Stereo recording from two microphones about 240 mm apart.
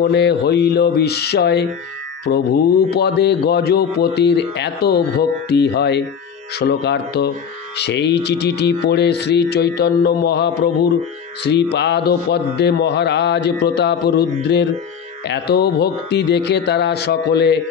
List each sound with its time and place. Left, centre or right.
0.1 s a man's voice: left